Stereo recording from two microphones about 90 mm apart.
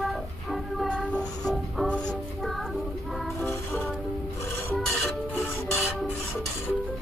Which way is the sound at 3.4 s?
25° left (ahead or behind).